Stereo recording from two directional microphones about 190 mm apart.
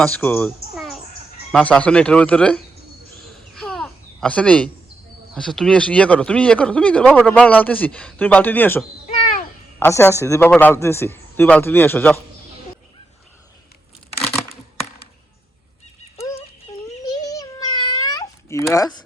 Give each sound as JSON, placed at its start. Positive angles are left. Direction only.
{"t": 0.0, "sound": "speech", "side_deg": 5}
{"t": 1.5, "sound": "speech", "side_deg": 5}
{"t": 3.5, "sound": "a sound", "side_deg": 5}
{"t": 5.3, "sound": "speech", "side_deg": 0}
{"t": 9.8, "sound": "speech", "side_deg": 15}
{"t": 16.1, "sound": "a sound", "side_deg": 15}
{"t": 18.7, "sound": "speech", "side_deg": 20}